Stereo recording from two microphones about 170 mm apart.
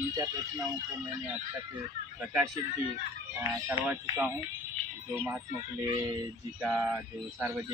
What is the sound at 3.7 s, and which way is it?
Speech, 10° right (ahead or behind).